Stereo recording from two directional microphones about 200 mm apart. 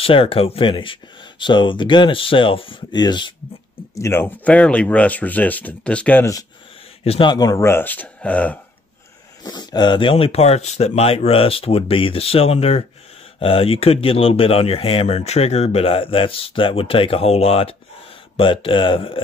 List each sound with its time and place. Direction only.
0.0 s speech: 30° left (ahead or behind); by 6.4 s 10° left (ahead or behind)
7.1 s speech: 25° left (ahead or behind); by 8.5 s 5° left (ahead or behind)
9.4 s speech: 20° left (ahead or behind)